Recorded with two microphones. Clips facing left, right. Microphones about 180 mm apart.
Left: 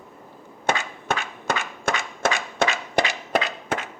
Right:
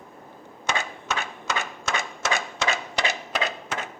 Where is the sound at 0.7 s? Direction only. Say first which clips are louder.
Left 4 dB; 55° left (ahead or behind).